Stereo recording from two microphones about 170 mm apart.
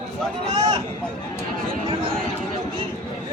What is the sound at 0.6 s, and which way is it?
Speech, 25° right (ahead or behind).